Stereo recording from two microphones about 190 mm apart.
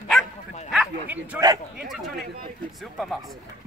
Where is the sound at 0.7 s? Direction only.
5° right (ahead or behind).